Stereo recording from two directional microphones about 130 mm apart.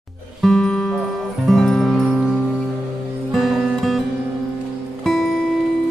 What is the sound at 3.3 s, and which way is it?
Music, centre (ahead or behind).